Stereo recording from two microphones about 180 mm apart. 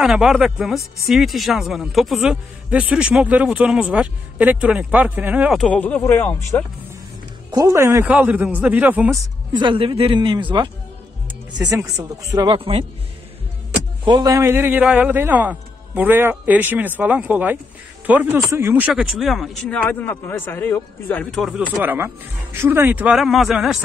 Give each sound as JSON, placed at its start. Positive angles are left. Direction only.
{"t": 0.0, "sound": "speech", "side_deg": 0}
{"t": 7.5, "sound": "a man's voice", "side_deg": -15}
{"t": 9.5, "sound": "speech", "side_deg": -25}
{"t": 11.7, "sound": "speech", "side_deg": -20}
{"t": 12.5, "sound": "speech", "side_deg": -30}
{"t": 14.0, "sound": "a man's voice", "side_deg": -20}
{"t": 19.9, "sound": "speech", "side_deg": 10}
{"t": 21.5, "sound": "a man's voice", "side_deg": -10}